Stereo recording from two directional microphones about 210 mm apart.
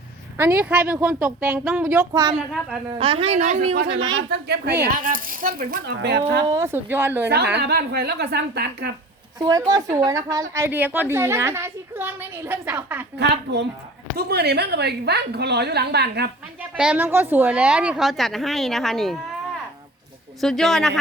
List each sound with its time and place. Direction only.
0.3 s a woman's voice: 10° right (ahead or behind)
2.9 s a woman's voice: 25° right (ahead or behind)
4.1 s a woman's voice: 50° right (ahead or behind)
6.5 s a woman's voice: 15° right (ahead or behind)
7.5 s a woman's voice: 50° right (ahead or behind)
9.4 s a woman's voice: 20° right (ahead or behind)
13.1 s a woman's voice: 55° right (ahead or behind)
16.6 s a woman's voice: 5° right (ahead or behind)
20.4 s a woman's voice: centre (ahead or behind)